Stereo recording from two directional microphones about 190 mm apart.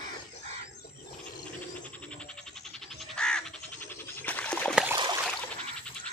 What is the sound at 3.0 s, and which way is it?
Frog, 5° left (ahead or behind).